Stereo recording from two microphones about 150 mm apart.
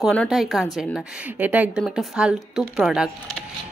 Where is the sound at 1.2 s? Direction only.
10° right (ahead or behind).